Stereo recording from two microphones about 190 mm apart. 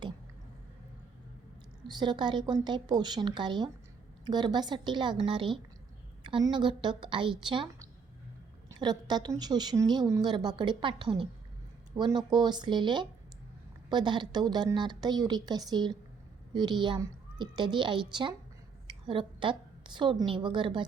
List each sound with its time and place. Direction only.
1.9 s a woman's voice: 25° right (ahead or behind)